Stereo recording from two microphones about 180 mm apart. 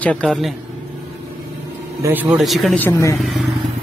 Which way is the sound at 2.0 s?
10° right (ahead or behind).